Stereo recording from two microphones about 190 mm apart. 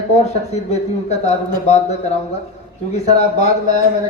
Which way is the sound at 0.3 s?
35° left (ahead or behind).